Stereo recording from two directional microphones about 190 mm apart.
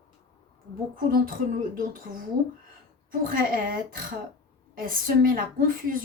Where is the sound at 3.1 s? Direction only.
50° right (ahead or behind).